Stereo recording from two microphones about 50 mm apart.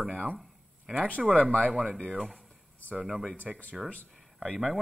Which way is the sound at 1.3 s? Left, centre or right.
Left.